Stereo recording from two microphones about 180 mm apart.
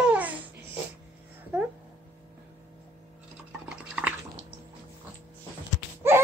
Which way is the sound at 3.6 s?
5° right (ahead or behind).